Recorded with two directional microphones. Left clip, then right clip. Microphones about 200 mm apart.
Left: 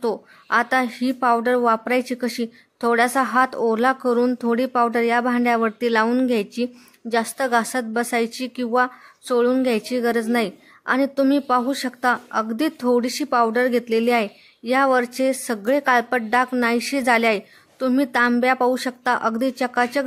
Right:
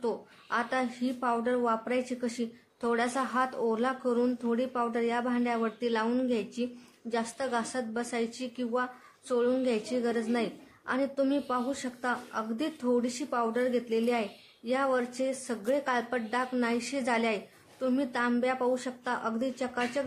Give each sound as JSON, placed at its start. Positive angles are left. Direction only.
{"t": 0.0, "sound": "speech", "side_deg": 40}